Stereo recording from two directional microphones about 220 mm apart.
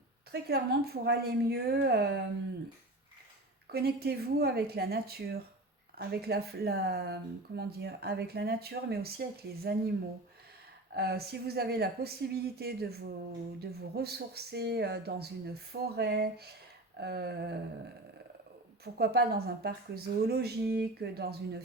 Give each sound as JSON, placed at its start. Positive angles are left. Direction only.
{"t": 0.3, "sound": "speech", "side_deg": -45}
{"t": 3.7, "sound": "speech", "side_deg": -45}
{"t": 10.9, "sound": "speech", "side_deg": -45}
{"t": 18.9, "sound": "speech", "side_deg": -45}